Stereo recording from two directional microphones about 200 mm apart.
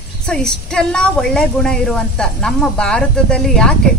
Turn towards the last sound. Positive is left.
turn(degrees=5)  # may be behind; listen again after turning